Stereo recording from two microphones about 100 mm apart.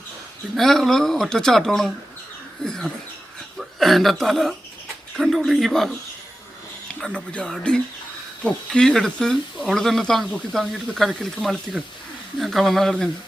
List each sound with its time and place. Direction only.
0.5 s speech: 5° left (ahead or behind)
7.0 s speech: 10° left (ahead or behind)